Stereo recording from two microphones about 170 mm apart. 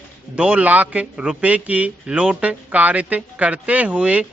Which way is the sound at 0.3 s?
10° right (ahead or behind).